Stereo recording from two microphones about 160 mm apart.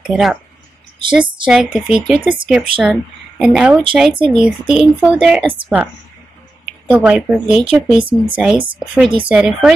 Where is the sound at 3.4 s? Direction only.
5° right (ahead or behind).